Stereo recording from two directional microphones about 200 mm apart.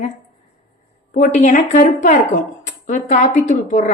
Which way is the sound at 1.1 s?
40° left (ahead or behind).